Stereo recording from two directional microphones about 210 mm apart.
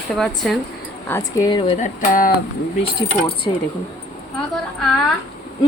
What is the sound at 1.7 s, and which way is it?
Speech, 40° left (ahead or behind).